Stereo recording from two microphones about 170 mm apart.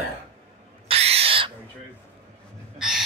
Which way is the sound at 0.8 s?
35° right (ahead or behind).